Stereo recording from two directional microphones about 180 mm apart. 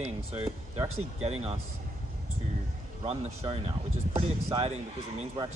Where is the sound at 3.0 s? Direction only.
30° right (ahead or behind).